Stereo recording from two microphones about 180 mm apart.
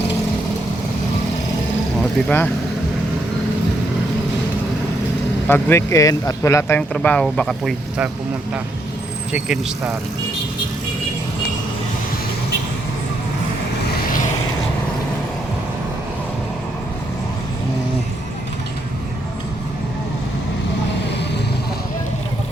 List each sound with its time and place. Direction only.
2.0 s speech: 10° left (ahead or behind)
5.5 s speech: 10° left (ahead or behind)
9.3 s speech: 5° right (ahead or behind)